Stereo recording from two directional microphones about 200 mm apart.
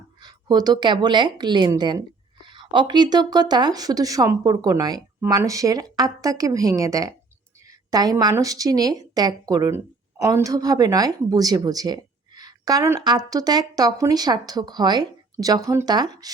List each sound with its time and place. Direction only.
0.2 s a woman's voice: 20° right (ahead or behind)